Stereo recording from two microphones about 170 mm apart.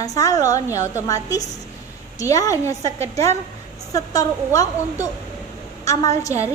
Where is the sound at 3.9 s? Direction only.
20° left (ahead or behind).